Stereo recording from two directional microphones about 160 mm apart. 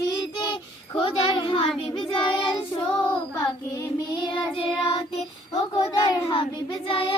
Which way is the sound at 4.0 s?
30° left (ahead or behind).